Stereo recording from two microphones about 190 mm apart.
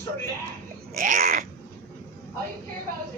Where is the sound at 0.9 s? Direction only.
45° right (ahead or behind).